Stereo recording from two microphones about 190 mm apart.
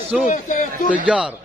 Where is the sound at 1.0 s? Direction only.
5° right (ahead or behind).